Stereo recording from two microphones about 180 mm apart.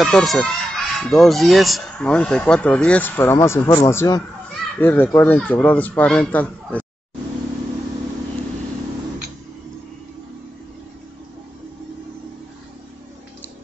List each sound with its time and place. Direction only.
0.0 s speech: centre (ahead or behind)